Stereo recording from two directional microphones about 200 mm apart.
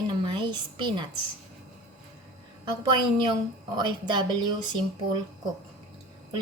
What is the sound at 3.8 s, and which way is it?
Speech, 20° right (ahead or behind).